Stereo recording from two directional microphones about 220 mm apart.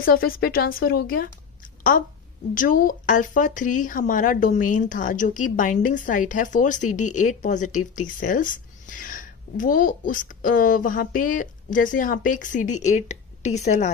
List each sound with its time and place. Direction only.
0.0 s a woman's voice: 40° left (ahead or behind)